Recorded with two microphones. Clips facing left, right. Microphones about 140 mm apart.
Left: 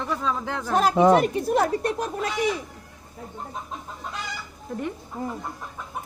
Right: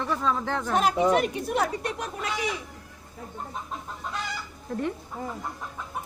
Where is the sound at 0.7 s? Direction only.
40° left (ahead or behind).